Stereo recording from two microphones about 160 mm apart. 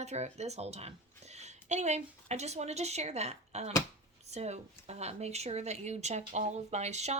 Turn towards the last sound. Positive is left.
turn(degrees=-45)  # may be behind; listen again after turning